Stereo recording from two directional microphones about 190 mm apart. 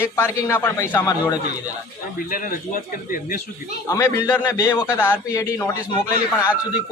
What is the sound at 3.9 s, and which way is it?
A man's voice, 15° left (ahead or behind).